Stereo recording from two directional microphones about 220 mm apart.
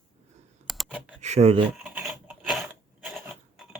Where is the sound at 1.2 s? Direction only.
30° right (ahead or behind).